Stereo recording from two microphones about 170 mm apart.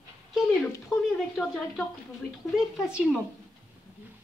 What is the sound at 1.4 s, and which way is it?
Speech, centre (ahead or behind).